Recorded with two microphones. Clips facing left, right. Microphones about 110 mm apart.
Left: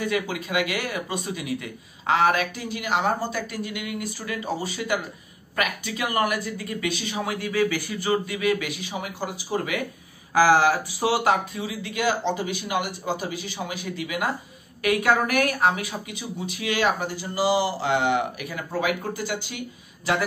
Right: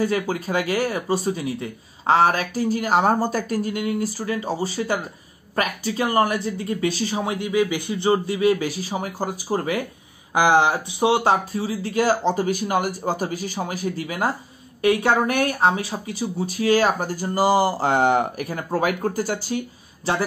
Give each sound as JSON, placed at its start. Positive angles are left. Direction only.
{"t": 0.0, "sound": "speech", "side_deg": -35}
{"t": 10.3, "sound": "speech", "side_deg": -20}
{"t": 11.5, "sound": "speech", "side_deg": -35}